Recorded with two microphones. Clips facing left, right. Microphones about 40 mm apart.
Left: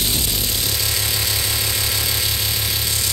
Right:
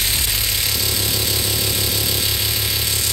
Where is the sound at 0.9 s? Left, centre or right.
Left.